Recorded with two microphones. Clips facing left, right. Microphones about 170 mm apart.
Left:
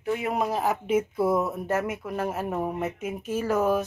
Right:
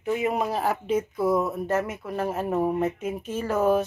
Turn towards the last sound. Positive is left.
turn(degrees=5)  # may be behind; listen again after turning